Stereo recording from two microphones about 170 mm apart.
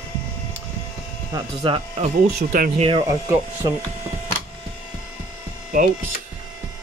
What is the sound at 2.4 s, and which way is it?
Speech, 55° right (ahead or behind).